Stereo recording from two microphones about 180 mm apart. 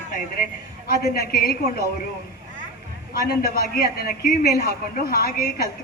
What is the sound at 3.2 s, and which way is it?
Speech, 55° left (ahead or behind).